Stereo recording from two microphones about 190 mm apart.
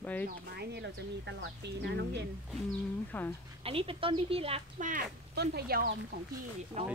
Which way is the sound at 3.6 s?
30° right (ahead or behind).